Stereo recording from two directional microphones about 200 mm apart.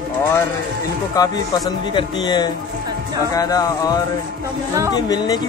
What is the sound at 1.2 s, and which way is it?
Speech, 20° left (ahead or behind).